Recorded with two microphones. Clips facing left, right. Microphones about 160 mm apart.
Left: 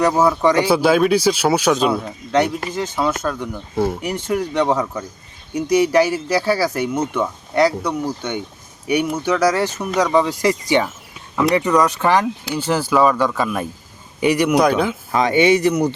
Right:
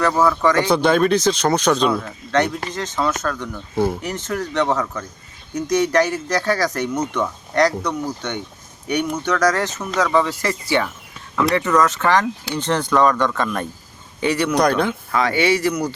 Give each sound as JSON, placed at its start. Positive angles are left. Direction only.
{"t": 0.0, "sound": "speech", "side_deg": 20}
{"t": 1.9, "sound": "speech", "side_deg": 20}
{"t": 2.3, "sound": "speech", "side_deg": 10}
{"t": 14.5, "sound": "speech", "side_deg": 5}
{"t": 15.1, "sound": "speech", "side_deg": 20}